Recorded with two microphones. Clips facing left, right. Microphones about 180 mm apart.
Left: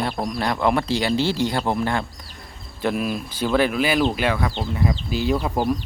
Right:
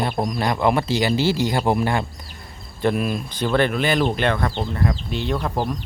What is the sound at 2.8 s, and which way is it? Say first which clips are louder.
A man's voice: right 2 dB; centre (ahead or behind).